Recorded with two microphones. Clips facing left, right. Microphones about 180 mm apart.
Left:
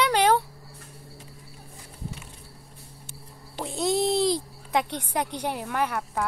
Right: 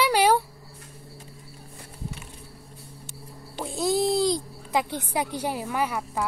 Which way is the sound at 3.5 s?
Centre (ahead or behind).